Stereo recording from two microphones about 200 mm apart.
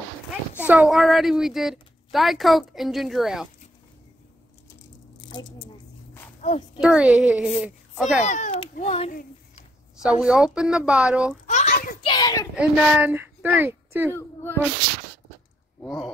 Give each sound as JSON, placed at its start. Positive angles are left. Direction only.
{"t": 0.6, "sound": "a woman's voice", "side_deg": -5}
{"t": 5.3, "sound": "a sound", "side_deg": 20}
{"t": 6.4, "sound": "a child's voice", "side_deg": 35}
{"t": 6.8, "sound": "a woman's voice", "side_deg": -5}
{"t": 8.2, "sound": "a child's voice", "side_deg": 35}
{"t": 10.0, "sound": "a woman's voice", "side_deg": -5}
{"t": 11.4, "sound": "a sound", "side_deg": 35}
{"t": 12.0, "sound": "a sound", "side_deg": 20}
{"t": 12.5, "sound": "speech", "side_deg": -5}
{"t": 14.1, "sound": "speech", "side_deg": 10}
{"t": 15.8, "sound": "speech", "side_deg": 0}